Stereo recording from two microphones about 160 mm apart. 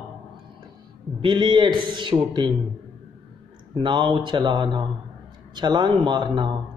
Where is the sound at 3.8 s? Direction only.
30° right (ahead or behind).